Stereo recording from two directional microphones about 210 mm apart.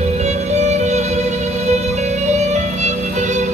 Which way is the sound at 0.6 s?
35° right (ahead or behind).